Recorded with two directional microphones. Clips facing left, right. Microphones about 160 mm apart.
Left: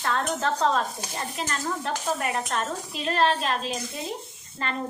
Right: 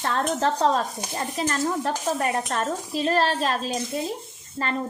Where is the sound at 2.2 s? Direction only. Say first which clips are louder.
Right 3 dB; 40° right (ahead or behind).